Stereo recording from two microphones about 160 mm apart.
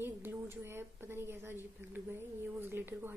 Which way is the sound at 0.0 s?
15° right (ahead or behind).